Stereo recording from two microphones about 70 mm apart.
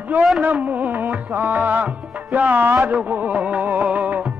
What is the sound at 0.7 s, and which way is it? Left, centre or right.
Music, right.